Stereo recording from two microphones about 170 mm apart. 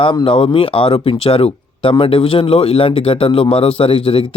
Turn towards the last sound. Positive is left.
turn(degrees=30)  # may be behind; listen again after turning